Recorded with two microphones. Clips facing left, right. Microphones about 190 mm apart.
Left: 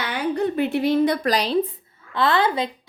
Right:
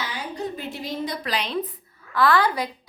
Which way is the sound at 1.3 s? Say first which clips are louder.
Left 6 dB; 35° left (ahead or behind).